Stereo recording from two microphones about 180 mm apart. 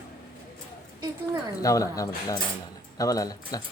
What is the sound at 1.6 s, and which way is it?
Speech, 20° left (ahead or behind).